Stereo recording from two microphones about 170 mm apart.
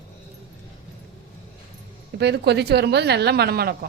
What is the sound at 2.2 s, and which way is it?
A woman's voice, 80° right.